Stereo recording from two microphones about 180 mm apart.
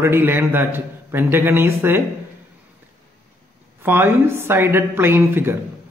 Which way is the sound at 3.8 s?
10° right (ahead or behind).